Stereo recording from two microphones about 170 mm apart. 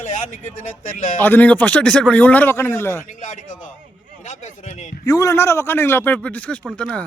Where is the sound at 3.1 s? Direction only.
45° left (ahead or behind).